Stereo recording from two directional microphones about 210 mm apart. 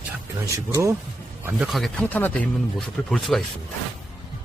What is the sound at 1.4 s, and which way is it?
Speech, centre (ahead or behind).